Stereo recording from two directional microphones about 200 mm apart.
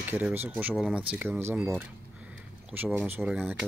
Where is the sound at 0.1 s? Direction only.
10° right (ahead or behind).